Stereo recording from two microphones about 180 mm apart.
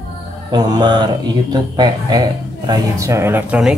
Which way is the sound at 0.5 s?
25° right (ahead or behind).